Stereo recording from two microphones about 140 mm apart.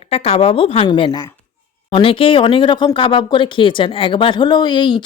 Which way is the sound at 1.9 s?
40° left (ahead or behind).